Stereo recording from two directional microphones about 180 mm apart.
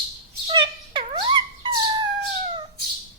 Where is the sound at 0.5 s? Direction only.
25° right (ahead or behind).